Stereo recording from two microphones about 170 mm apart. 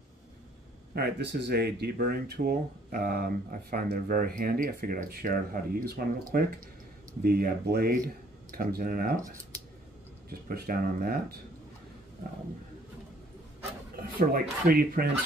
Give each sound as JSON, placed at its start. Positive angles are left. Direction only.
{"t": 0.9, "sound": "speech", "side_deg": -75}
{"t": 10.5, "sound": "speech", "side_deg": -60}
{"t": 13.9, "sound": "a sound", "side_deg": -60}
{"t": 14.7, "sound": "speech", "side_deg": -60}